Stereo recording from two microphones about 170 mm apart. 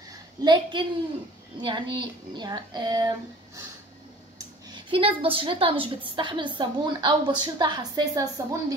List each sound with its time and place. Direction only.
0.1 s a sound: 25° right (ahead or behind)
1.6 s a woman's voice: 25° right (ahead or behind)
4.6 s a woman's voice: 30° right (ahead or behind)